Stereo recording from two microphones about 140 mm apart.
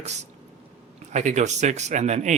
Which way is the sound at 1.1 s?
55° right (ahead or behind).